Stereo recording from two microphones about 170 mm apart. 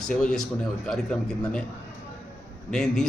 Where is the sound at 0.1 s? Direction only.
5° left (ahead or behind).